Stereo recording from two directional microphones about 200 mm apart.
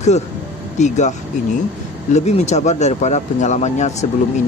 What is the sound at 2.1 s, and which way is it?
Speech, 35° left (ahead or behind).